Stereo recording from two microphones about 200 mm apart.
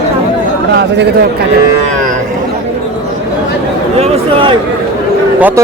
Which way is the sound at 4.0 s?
25° right (ahead or behind).